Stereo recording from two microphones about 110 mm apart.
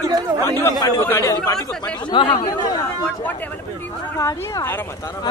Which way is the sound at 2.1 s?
50° left (ahead or behind).